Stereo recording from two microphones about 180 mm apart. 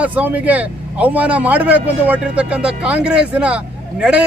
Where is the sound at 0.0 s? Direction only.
10° right (ahead or behind).